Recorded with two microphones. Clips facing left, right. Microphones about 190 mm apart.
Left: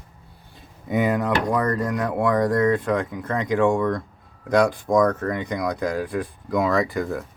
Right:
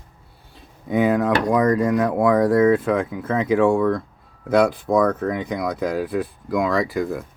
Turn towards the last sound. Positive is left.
turn(degrees=0)  # may be behind; listen again after turning